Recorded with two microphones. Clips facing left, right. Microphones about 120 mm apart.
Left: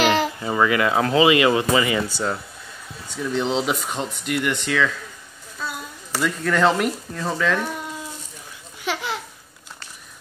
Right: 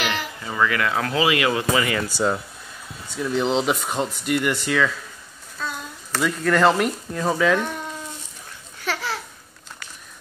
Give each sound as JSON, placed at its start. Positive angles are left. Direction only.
{"t": 0.0, "sound": "babbling", "side_deg": 35}
{"t": 0.5, "sound": "speech", "side_deg": 15}
{"t": 1.1, "sound": "speech", "side_deg": 5}
{"t": 3.2, "sound": "speech", "side_deg": 0}
{"t": 8.8, "sound": "babbling", "side_deg": 20}